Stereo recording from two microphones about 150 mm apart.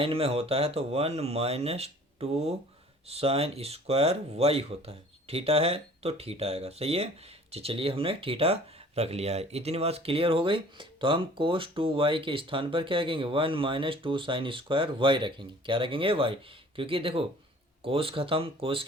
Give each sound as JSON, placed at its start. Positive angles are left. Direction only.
{"t": 0.0, "sound": "speech", "side_deg": -40}